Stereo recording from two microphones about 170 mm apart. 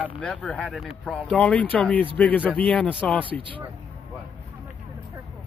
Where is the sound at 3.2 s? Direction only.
30° right (ahead or behind).